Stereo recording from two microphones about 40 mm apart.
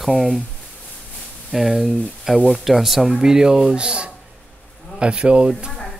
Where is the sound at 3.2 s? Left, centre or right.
Centre.